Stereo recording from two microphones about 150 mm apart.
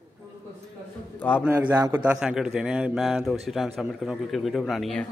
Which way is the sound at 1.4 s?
15° right (ahead or behind).